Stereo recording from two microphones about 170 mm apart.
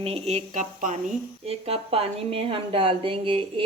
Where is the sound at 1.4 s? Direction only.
35° right (ahead or behind).